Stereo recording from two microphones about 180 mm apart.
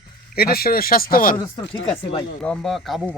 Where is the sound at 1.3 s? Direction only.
25° left (ahead or behind).